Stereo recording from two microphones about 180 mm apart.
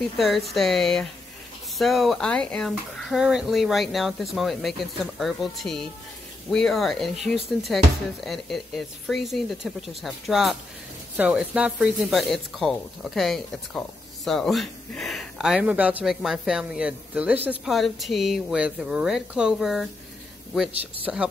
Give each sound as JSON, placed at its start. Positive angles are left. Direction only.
{"t": 0.5, "sound": "speech", "side_deg": 0}